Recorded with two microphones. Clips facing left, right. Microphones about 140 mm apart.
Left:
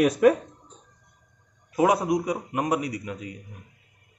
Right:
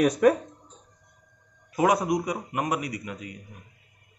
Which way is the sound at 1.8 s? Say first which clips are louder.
Left 1 dB; 25° left (ahead or behind).